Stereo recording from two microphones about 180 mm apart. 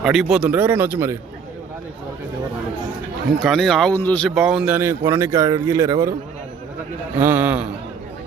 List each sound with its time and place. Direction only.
0.0 s speech: 5° right (ahead or behind)
3.4 s speech: centre (ahead or behind)
4.4 s speech: 5° right (ahead or behind)
7.2 s speech: 10° right (ahead or behind)